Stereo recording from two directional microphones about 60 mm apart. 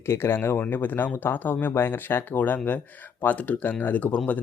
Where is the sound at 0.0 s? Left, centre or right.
Left.